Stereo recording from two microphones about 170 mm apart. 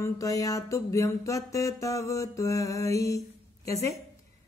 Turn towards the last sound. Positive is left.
turn(degrees=20)  # may be behind; listen again after turning